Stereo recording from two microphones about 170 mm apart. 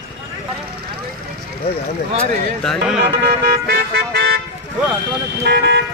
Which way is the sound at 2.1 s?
5° left (ahead or behind).